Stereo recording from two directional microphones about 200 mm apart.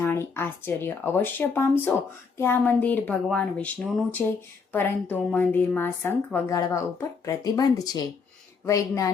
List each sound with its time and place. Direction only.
0.0 s a woman's voice: 10° left (ahead or behind)